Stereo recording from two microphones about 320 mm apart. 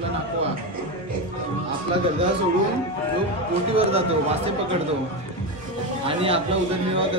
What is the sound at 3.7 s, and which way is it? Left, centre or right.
Speech, centre.